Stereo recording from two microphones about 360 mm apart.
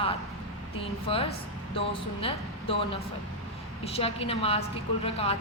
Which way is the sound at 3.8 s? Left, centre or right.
Centre.